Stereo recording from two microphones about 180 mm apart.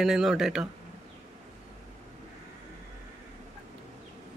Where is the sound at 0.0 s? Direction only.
Centre (ahead or behind).